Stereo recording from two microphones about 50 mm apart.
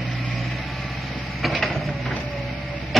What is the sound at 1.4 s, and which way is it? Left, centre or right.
Mechanisms, centre.